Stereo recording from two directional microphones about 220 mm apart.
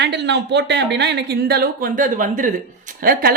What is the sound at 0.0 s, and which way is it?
Speech, 50° right (ahead or behind).